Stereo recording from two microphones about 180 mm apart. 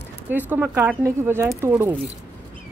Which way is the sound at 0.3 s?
10° right (ahead or behind).